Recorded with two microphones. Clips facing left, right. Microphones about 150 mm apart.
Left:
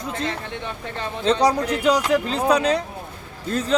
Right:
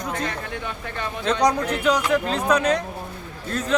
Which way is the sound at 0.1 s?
25° left (ahead or behind).